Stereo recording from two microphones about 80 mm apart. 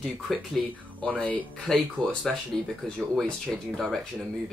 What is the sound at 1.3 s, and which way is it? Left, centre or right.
Speech, centre.